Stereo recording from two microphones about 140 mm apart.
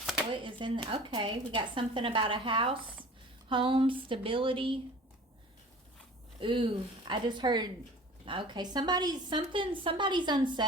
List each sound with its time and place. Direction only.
0.3 s a woman's voice: 35° right (ahead or behind)
6.4 s a woman's voice: 35° right (ahead or behind)